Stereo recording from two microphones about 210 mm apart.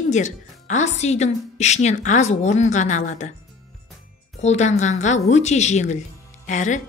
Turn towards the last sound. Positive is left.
turn(degrees=35)  # may be behind; listen again after turning